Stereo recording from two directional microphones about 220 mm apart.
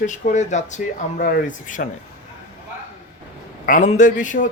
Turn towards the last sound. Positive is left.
turn(degrees=35)  # may be behind; listen again after turning